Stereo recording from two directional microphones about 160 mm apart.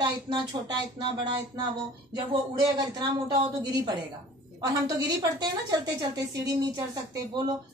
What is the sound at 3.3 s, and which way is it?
A woman's voice, 25° right (ahead or behind).